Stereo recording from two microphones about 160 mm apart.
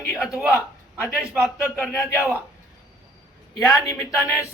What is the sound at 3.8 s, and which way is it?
Speech, 20° left (ahead or behind).